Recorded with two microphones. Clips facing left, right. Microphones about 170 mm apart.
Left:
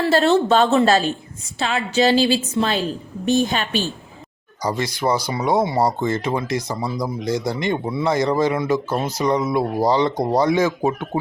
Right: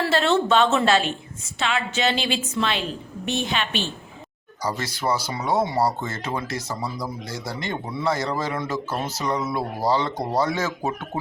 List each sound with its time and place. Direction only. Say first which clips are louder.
0.1 s a woman's voice: left 5 dB; 40° left (ahead or behind)
4.6 s speech: left 5 dB; 15° left (ahead or behind)